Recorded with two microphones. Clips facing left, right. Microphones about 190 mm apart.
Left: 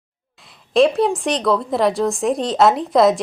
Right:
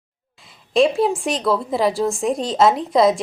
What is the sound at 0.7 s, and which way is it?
A woman's voice, centre (ahead or behind).